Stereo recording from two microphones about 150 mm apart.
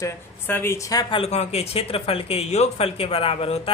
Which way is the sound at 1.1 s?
45° left (ahead or behind).